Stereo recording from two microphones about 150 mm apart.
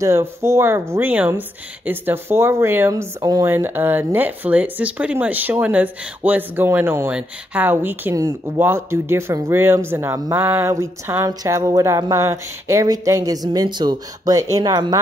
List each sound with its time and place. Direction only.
0.0 s speech: 20° right (ahead or behind)
3.5 s speech: 15° right (ahead or behind)
10.4 s a sound: 15° right (ahead or behind)